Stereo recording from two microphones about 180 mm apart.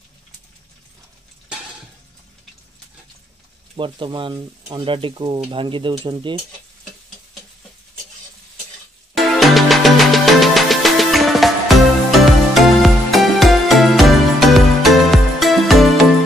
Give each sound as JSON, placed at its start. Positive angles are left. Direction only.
{"t": 3.7, "sound": "speech", "side_deg": -30}
{"t": 9.1, "sound": "music", "side_deg": 0}